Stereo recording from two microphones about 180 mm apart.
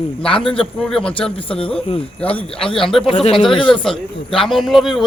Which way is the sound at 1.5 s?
30° left (ahead or behind).